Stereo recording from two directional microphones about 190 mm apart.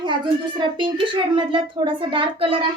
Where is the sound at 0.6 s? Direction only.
25° right (ahead or behind).